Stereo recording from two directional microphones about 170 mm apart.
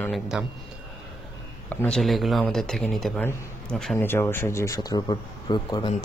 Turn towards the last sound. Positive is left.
turn(degrees=25)  # may be behind; listen again after turning